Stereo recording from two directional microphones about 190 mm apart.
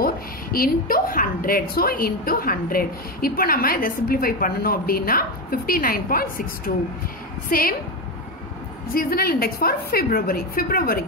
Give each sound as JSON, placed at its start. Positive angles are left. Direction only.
{"t": 0.0, "sound": "a woman's voice", "side_deg": 50}
{"t": 8.9, "sound": "a woman's voice", "side_deg": 55}